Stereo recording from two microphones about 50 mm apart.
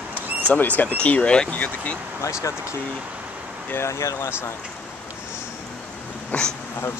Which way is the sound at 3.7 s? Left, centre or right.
Left.